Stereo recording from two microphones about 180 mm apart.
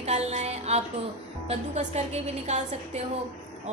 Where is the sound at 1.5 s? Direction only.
40° right (ahead or behind).